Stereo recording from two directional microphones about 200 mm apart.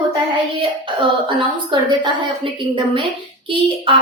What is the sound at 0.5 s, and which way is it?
A woman's voice, 25° right (ahead or behind).